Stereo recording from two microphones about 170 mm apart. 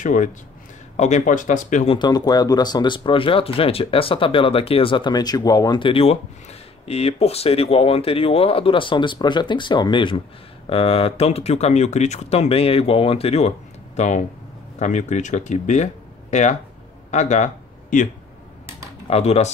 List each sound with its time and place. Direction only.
0.0 s speech: 50° left (ahead or behind)
1.9 s speech: 25° left (ahead or behind); by 18.0 s 45° left (ahead or behind)
19.0 s speech: 35° left (ahead or behind)